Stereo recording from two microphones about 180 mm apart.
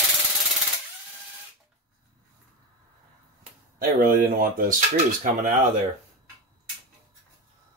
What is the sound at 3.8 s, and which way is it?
Speech, 55° right (ahead or behind).